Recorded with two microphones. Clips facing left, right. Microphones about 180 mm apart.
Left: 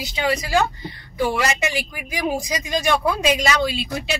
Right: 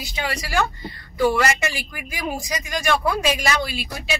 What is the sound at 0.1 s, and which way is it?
Speech, 20° left (ahead or behind).